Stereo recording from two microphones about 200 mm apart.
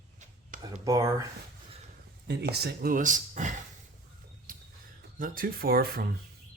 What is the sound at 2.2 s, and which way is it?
Speech, 55° right (ahead or behind).